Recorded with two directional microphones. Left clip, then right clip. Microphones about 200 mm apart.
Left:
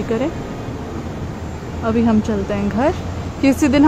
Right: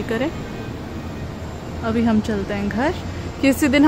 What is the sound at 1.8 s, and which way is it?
A woman's voice, centre (ahead or behind).